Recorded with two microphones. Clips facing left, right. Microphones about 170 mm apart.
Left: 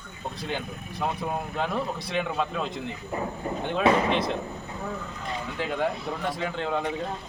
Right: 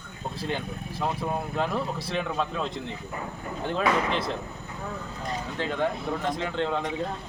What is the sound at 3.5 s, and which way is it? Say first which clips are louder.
Speech: left 5 dB; 30° left (ahead or behind).